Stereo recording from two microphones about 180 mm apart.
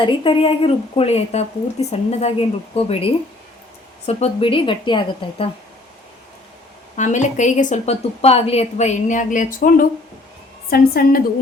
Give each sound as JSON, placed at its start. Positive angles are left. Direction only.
{"t": 0.0, "sound": "a woman's voice", "side_deg": 25}
{"t": 6.9, "sound": "a woman's voice", "side_deg": 40}